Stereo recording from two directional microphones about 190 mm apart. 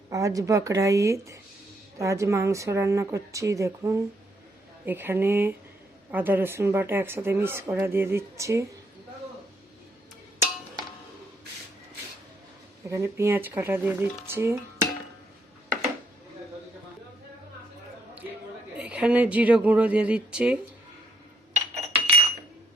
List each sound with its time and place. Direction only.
0.1 s speech: 15° right (ahead or behind)
12.9 s speech: 15° right (ahead or behind)
18.8 s speech: 5° right (ahead or behind)
21.5 s a sound: 35° right (ahead or behind)